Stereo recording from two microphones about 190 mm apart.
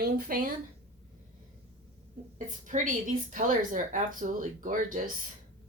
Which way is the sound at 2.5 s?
40° right (ahead or behind).